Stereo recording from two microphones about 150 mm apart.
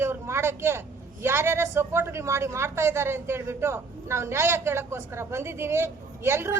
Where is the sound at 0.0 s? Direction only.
15° right (ahead or behind).